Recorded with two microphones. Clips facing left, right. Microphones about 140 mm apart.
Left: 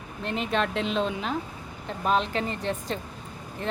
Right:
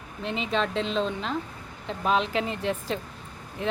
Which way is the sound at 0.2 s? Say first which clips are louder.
Even; centre (ahead or behind).